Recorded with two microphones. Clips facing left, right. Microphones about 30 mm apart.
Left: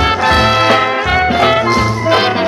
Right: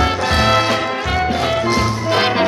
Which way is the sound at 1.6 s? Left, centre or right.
Centre.